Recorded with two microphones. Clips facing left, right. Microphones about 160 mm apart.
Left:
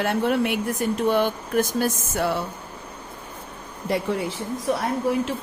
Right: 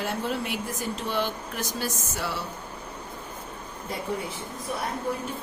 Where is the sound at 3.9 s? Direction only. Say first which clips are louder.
Left 7 dB; 80° left.